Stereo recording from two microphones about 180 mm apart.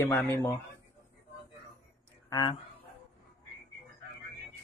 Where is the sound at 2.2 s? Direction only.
20° left (ahead or behind).